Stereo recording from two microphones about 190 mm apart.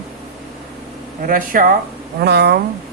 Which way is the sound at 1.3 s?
45° right (ahead or behind).